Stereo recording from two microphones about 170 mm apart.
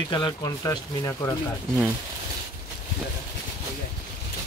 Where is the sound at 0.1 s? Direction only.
25° left (ahead or behind).